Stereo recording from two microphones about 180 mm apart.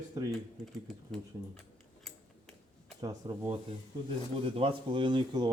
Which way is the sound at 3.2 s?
20° right (ahead or behind).